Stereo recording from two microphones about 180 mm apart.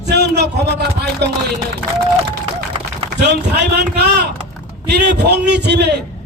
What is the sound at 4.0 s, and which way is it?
A man's voice, 70° right (ahead or behind).